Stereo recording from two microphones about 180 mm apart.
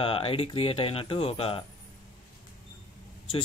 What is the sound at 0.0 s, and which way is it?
Speech, 30° left (ahead or behind).